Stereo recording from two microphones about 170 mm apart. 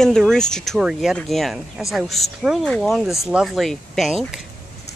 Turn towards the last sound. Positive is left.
turn(degrees=0)  # may be behind; listen again after turning